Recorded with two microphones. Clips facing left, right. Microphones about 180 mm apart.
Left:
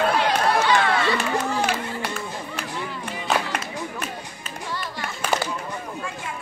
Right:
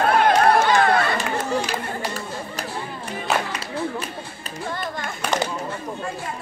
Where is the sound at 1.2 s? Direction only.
60° right (ahead or behind).